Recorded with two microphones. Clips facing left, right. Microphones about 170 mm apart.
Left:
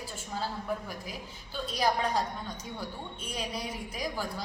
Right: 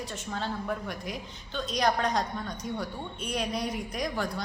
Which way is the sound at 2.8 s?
70° right (ahead or behind).